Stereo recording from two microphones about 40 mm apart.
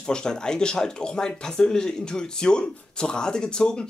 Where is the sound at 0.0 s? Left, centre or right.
Centre.